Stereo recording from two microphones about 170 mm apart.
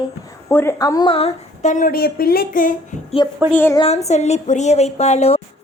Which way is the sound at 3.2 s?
25° left (ahead or behind).